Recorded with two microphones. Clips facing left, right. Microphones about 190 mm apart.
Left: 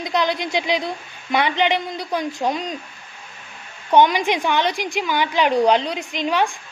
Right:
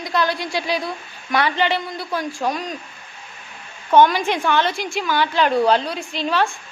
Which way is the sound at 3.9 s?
15° left (ahead or behind).